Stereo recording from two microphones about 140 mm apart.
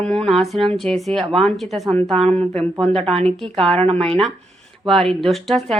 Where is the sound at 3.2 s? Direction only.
5° left (ahead or behind).